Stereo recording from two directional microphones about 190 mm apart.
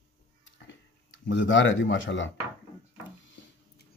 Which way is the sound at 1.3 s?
75° left (ahead or behind).